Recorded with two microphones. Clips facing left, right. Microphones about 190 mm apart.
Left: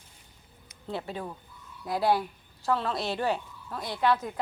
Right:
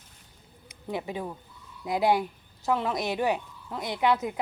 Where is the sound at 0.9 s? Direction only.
15° right (ahead or behind).